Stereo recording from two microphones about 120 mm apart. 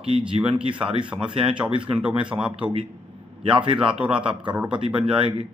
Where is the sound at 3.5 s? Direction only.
45° right (ahead or behind).